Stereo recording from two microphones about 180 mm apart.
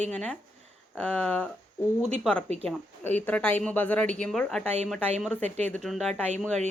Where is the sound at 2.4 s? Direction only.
35° right (ahead or behind).